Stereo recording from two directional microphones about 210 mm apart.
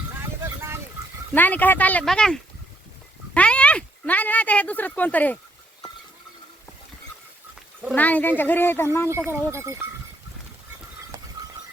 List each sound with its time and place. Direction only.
0.2 s boat: 10° right (ahead or behind)
1.3 s speech: 10° left (ahead or behind)
7.9 s speech: 5° left (ahead or behind)
9.0 s speech: 10° right (ahead or behind)